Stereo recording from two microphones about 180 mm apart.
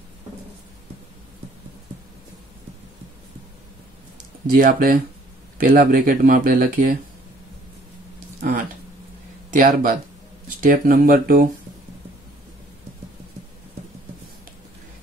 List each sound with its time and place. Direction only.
4.6 s speech: 55° right (ahead or behind)
9.5 s speech: 50° right (ahead or behind)